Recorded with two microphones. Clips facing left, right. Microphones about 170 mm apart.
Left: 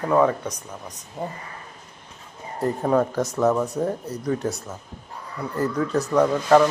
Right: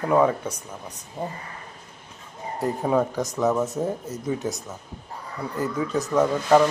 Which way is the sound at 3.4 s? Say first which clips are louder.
Left 1 dB; centre (ahead or behind).